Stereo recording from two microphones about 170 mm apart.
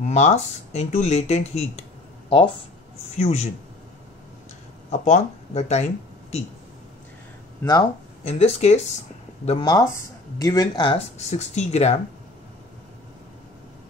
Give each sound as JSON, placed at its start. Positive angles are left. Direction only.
{"t": 0.0, "sound": "speech", "side_deg": 40}
{"t": 3.2, "sound": "speech", "side_deg": 40}
{"t": 5.0, "sound": "speech", "side_deg": 40}
{"t": 8.2, "sound": "speech", "side_deg": 35}
{"t": 9.5, "sound": "speech", "side_deg": 25}
{"t": 11.1, "sound": "speech", "side_deg": 40}